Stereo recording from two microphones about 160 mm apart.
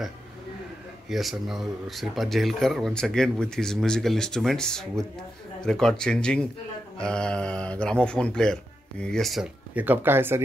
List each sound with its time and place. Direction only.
1.0 s speech: centre (ahead or behind)